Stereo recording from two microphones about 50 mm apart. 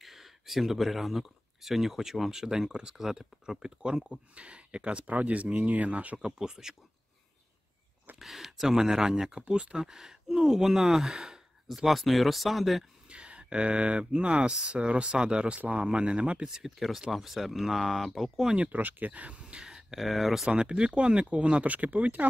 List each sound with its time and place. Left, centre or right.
0.0 s speech: centre; by 6.1 s right
6.1 s speech: centre
8.2 s speech: centre
13.1 s speech: right
16.4 s speech: centre
18.5 s speech: right
19.4 s speech: centre
20.4 s speech: centre